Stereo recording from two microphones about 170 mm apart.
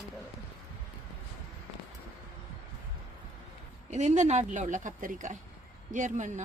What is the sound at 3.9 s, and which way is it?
A woman's voice, 45° right (ahead or behind).